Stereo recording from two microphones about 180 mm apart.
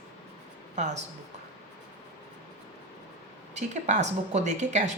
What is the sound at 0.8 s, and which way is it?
Speech, 40° right (ahead or behind).